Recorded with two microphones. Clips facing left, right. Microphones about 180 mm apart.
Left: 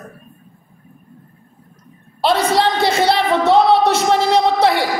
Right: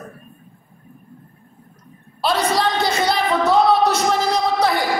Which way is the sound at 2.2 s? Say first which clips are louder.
Left 4 dB; 25° left (ahead or behind).